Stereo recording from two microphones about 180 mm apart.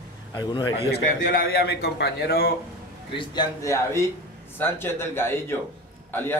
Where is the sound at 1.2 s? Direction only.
55° left (ahead or behind).